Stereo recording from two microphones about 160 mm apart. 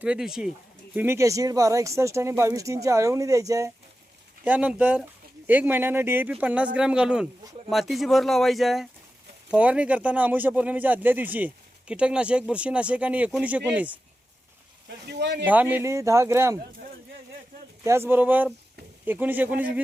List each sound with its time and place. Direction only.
0.0 s speech: 5° right (ahead or behind)
0.9 s speech: 15° right (ahead or behind)
4.4 s speech: 10° right (ahead or behind)
14.8 s speech: 90° right
15.4 s speech: 10° right (ahead or behind)
17.8 s speech: 15° right (ahead or behind)